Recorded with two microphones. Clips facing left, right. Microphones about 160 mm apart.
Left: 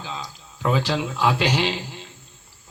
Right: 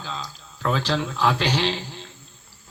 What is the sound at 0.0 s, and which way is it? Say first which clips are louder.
A man's voice: even; 15° left (ahead or behind).